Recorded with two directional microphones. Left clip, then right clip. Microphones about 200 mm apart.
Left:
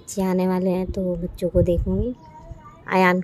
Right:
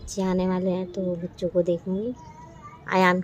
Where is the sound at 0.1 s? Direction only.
20° left (ahead or behind).